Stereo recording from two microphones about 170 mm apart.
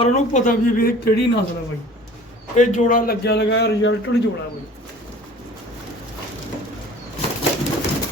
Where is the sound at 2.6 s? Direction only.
50° left (ahead or behind); by 3.9 s 80° left.